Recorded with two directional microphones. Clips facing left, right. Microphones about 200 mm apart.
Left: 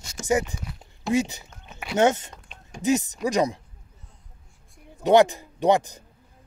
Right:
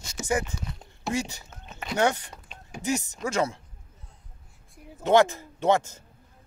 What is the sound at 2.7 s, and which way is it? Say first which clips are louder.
Speech: left 6 dB; 20° left (ahead or behind).